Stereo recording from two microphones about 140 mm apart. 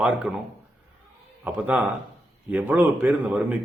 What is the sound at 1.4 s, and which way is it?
Speech, 10° right (ahead or behind).